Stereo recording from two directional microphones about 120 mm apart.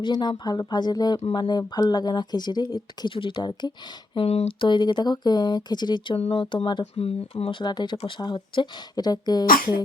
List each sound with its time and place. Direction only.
0.0 s speech: 40° left (ahead or behind)
4.1 s speech: 55° left (ahead or behind); by 6.1 s 40° left (ahead or behind)
6.1 s speech: 60° left (ahead or behind)
7.6 s speech: 35° left (ahead or behind)